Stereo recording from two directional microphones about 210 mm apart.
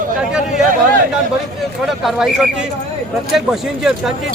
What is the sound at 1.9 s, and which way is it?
Speech, centre (ahead or behind).